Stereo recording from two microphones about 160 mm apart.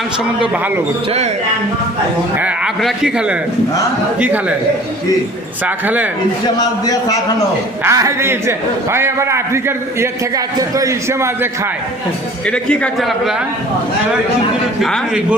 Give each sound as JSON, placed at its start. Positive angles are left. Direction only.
{"t": 2.4, "sound": "a man's voice", "side_deg": -5}
{"t": 5.6, "sound": "a man's voice", "side_deg": -10}
{"t": 6.6, "sound": "a man's voice", "side_deg": 25}
{"t": 7.9, "sound": "a man's voice", "side_deg": -20}
{"t": 12.5, "sound": "a man's voice", "side_deg": 5}
{"t": 14.8, "sound": "a man's voice", "side_deg": -5}